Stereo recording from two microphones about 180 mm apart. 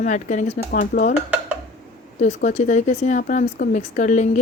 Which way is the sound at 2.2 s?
40° left (ahead or behind).